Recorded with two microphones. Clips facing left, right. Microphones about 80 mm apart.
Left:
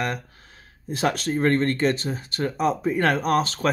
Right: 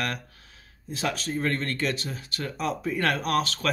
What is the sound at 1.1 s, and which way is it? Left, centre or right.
Speech, left.